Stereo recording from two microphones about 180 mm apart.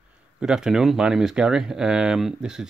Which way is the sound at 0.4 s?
5° right (ahead or behind).